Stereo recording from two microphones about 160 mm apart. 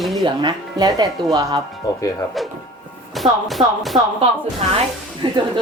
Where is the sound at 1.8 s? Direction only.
20° left (ahead or behind).